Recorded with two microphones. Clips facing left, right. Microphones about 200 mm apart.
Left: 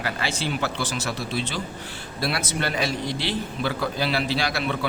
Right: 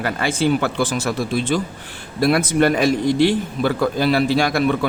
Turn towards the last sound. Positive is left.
turn(degrees=-50)  # may be behind; listen again after turning